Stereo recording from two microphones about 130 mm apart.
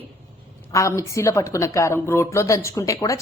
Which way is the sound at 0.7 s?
25° left (ahead or behind).